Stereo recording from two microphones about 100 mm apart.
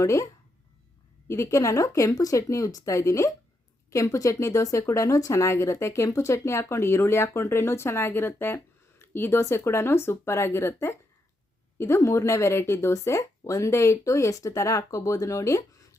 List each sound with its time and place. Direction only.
0.0 s speech: 30° left (ahead or behind)
1.3 s speech: 30° left (ahead or behind)